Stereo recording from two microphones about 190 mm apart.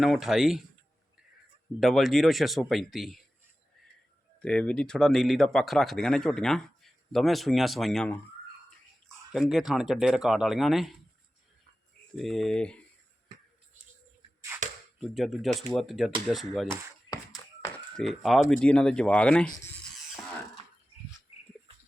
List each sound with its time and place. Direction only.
0.0 s speech: centre (ahead or behind)
1.8 s speech: centre (ahead or behind)
4.4 s speech: 5° left (ahead or behind)
12.1 s speech: centre (ahead or behind)
14.5 s a sound: 10° right (ahead or behind)
15.1 s speech: centre (ahead or behind)
17.1 s a sound: 20° left (ahead or behind)
17.9 s speech: centre (ahead or behind)